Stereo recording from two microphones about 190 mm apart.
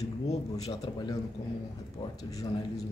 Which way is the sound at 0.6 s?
20° left (ahead or behind).